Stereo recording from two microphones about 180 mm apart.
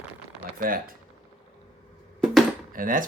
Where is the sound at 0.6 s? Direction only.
55° right (ahead or behind).